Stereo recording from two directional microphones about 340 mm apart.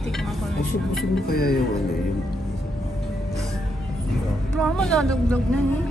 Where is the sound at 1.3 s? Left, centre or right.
Left.